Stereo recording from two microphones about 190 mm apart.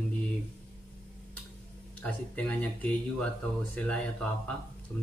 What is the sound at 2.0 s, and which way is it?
Speech, 5° left (ahead or behind).